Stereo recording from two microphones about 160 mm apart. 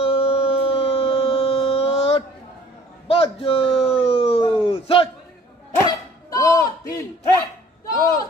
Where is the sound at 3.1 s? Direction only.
35° left (ahead or behind).